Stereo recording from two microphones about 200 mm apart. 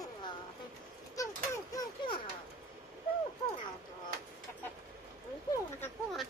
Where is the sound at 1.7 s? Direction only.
25° left (ahead or behind).